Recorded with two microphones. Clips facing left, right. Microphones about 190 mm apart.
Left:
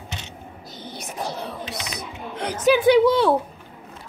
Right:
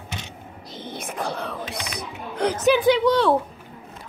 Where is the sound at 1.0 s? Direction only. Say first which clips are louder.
Right 1 dB; 55° right (ahead or behind).